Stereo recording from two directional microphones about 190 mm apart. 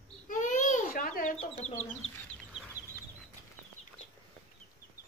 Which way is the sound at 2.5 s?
5° right (ahead or behind).